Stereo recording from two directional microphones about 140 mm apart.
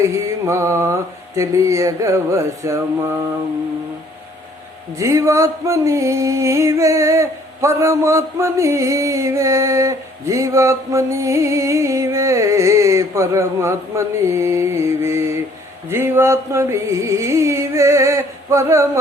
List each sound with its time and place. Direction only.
0.0 s music: 20° right (ahead or behind)
4.9 s music: 20° right (ahead or behind)